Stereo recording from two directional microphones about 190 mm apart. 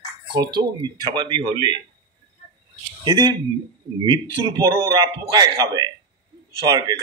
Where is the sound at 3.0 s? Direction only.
20° right (ahead or behind).